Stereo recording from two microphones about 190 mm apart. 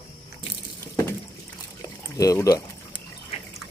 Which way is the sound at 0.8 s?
15° left (ahead or behind).